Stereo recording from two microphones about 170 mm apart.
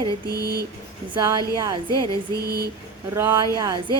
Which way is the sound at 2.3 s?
65° right (ahead or behind).